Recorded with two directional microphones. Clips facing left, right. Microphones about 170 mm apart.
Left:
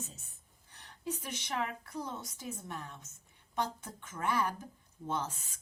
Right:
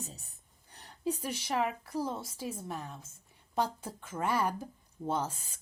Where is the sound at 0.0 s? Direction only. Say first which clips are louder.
Right 2 dB; 35° right (ahead or behind).